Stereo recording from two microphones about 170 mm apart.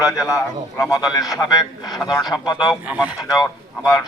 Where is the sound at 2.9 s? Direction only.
10° right (ahead or behind).